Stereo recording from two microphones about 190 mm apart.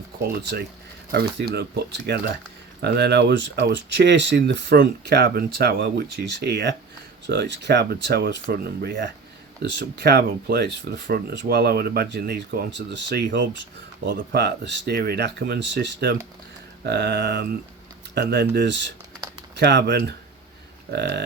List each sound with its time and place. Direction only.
0.2 s speech: 55° right (ahead or behind)